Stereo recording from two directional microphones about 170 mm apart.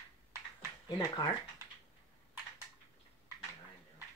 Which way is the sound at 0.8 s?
25° left (ahead or behind).